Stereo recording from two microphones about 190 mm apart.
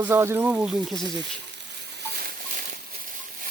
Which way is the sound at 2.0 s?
55° right (ahead or behind).